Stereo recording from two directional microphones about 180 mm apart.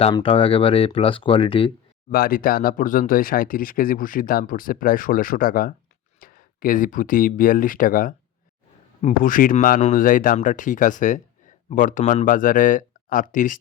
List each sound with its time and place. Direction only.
0.0 s speech: 30° left (ahead or behind)
2.0 s speech: 55° left (ahead or behind)